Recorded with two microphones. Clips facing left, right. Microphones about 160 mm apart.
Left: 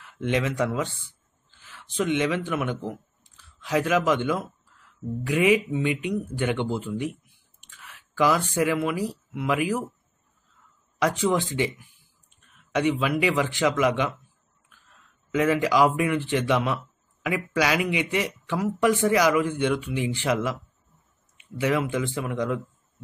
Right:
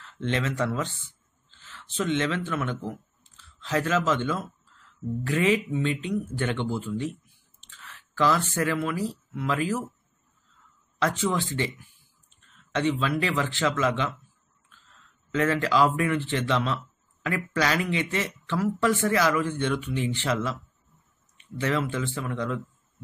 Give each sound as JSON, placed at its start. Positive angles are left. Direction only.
{"t": 0.0, "sound": "a man's voice", "side_deg": 15}
{"t": 11.0, "sound": "a man's voice", "side_deg": 15}
{"t": 15.3, "sound": "a man's voice", "side_deg": 15}